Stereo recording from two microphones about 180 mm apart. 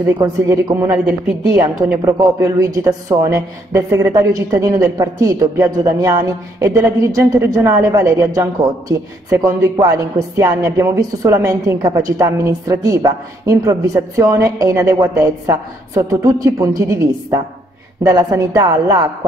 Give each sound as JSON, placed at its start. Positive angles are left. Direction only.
{"t": 0.2, "sound": "a woman's voice", "side_deg": -20}
{"t": 0.9, "sound": "a woman's voice", "side_deg": -5}
{"t": 2.1, "sound": "a woman's voice", "side_deg": -20}